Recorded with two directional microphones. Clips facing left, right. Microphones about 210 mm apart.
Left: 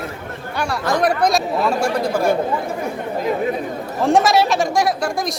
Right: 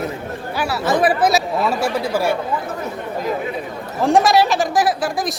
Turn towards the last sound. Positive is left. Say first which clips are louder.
# right 1 dB
turn(degrees=0)  # may be behind; listen again after turning